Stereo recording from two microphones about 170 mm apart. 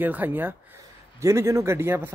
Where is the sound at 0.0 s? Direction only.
10° right (ahead or behind).